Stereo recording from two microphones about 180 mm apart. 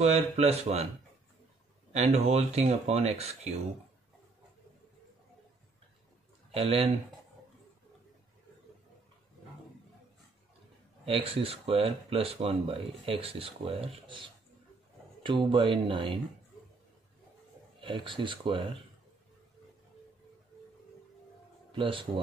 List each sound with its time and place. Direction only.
0.0 s speech: 35° right (ahead or behind)
1.9 s speech: 40° right (ahead or behind)
6.5 s speech: 30° right (ahead or behind)
11.1 s speech: 30° right (ahead or behind)
15.2 s speech: 25° right (ahead or behind)
17.7 s speech: 30° right (ahead or behind)
21.7 s speech: 30° right (ahead or behind)